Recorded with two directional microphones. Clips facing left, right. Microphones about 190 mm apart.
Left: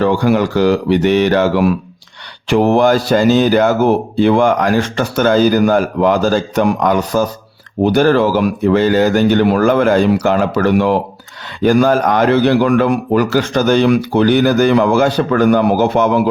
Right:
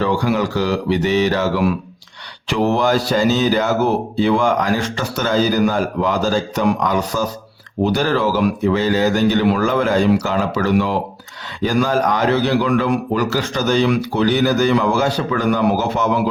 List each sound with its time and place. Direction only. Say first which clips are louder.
0.0 s speech: left 5 dB; 55° left (ahead or behind)